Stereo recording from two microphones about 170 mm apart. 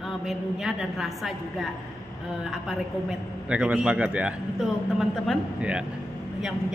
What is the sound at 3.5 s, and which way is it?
A man's voice, 5° right (ahead or behind).